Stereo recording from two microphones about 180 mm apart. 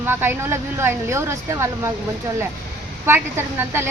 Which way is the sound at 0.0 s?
10° right (ahead or behind).